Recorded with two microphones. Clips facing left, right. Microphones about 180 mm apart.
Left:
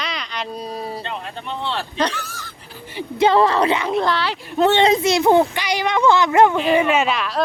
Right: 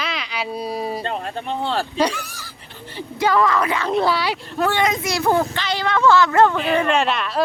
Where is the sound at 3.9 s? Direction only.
5° right (ahead or behind).